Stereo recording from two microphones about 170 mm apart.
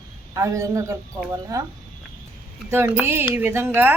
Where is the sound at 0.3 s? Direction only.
15° right (ahead or behind).